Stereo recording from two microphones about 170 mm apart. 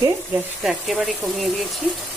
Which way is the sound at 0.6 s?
Centre (ahead or behind).